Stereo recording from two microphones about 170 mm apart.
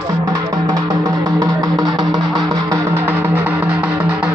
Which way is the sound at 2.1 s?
Centre (ahead or behind).